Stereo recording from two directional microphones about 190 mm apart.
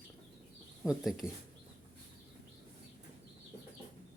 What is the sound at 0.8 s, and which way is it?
Speech, centre (ahead or behind).